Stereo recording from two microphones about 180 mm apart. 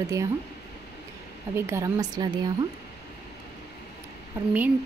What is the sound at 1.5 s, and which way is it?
Speech, 15° right (ahead or behind).